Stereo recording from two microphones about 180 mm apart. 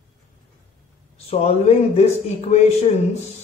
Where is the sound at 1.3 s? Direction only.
35° left (ahead or behind).